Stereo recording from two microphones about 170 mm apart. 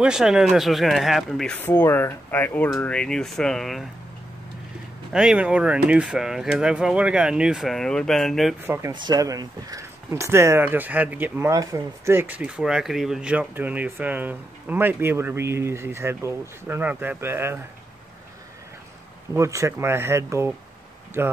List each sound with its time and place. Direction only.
0.0 s speech: 5° right (ahead or behind)
5.1 s speech: 5° right (ahead or behind)
8.9 s speech: 25° right (ahead or behind)
19.3 s speech: 15° right (ahead or behind)